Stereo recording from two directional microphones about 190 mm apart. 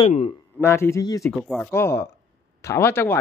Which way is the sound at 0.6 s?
15° left (ahead or behind).